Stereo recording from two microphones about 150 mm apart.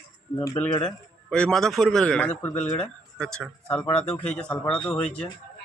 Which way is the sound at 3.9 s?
45° left (ahead or behind).